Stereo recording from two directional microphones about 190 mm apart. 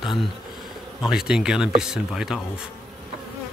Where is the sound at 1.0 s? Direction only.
Centre (ahead or behind).